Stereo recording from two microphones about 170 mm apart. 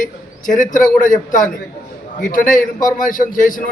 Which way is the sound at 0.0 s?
50° left (ahead or behind).